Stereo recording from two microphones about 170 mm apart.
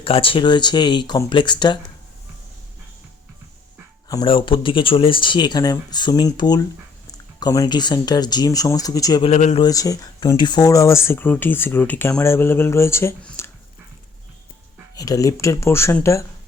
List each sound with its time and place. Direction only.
0.0 s speech: 30° left (ahead or behind)
4.1 s speech: 30° left (ahead or behind)
9.2 s speech: 40° left (ahead or behind)
9.6 s speech: 20° left (ahead or behind)
14.9 s speech: 20° left (ahead or behind)